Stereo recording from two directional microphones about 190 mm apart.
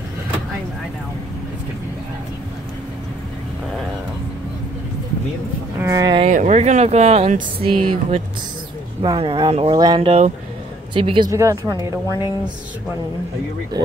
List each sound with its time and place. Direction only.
5.8 s speech: 15° right (ahead or behind)
6.2 s speech: 40° right (ahead or behind)
11.3 s speech: 15° right (ahead or behind)
13.7 s speech: 20° right (ahead or behind)